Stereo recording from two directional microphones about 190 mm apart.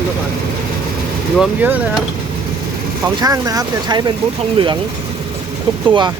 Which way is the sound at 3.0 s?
20° right (ahead or behind).